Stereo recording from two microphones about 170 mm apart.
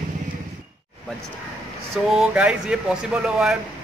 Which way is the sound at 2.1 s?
5° right (ahead or behind).